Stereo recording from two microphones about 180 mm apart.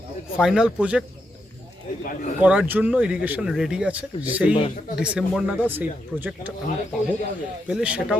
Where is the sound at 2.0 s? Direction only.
50° left (ahead or behind).